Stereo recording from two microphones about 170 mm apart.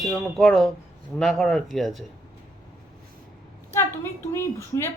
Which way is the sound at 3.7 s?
15° left (ahead or behind).